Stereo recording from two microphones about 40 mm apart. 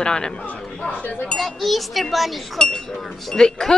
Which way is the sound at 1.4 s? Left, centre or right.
Centre.